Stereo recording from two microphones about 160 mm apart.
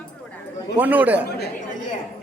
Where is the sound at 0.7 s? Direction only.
10° right (ahead or behind).